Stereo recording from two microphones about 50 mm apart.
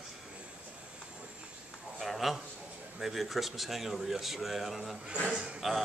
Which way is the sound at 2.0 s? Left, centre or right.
Centre.